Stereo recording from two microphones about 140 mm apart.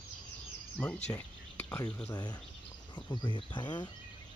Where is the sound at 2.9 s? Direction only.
30° left (ahead or behind).